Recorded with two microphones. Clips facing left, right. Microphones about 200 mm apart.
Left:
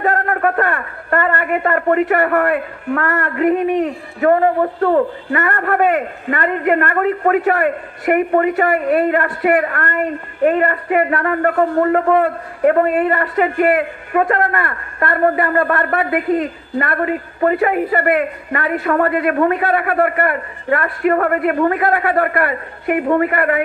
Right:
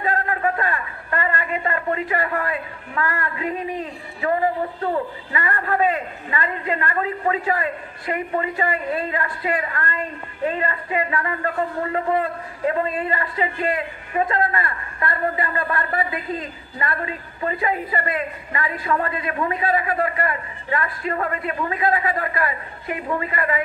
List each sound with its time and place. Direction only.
0.0 s a man's voice: 70° left (ahead or behind)